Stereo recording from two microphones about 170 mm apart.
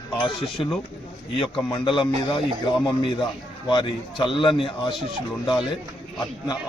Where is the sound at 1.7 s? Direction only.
30° left (ahead or behind).